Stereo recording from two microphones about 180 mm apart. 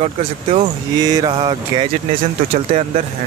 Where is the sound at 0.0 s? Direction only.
40° right (ahead or behind).